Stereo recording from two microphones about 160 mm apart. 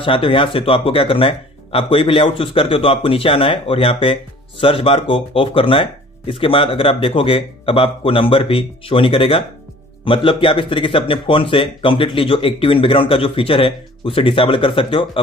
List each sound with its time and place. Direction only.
0.0 s speech: 35° left (ahead or behind)